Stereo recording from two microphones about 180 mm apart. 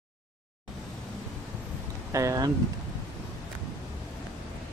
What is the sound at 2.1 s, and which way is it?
Speech, 20° right (ahead or behind).